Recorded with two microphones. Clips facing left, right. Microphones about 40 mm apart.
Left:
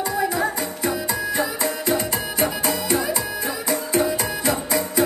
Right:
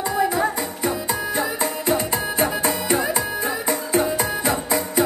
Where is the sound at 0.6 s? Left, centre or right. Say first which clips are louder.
Even; centre.